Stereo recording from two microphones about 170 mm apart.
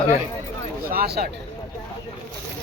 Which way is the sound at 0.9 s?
65° right (ahead or behind).